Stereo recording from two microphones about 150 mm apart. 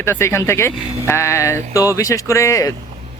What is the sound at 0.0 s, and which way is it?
Speech, 15° left (ahead or behind).